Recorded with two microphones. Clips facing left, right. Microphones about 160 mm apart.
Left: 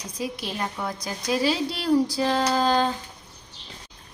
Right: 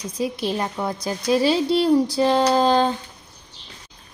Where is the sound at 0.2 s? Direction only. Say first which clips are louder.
Right 6 dB; 30° right (ahead or behind).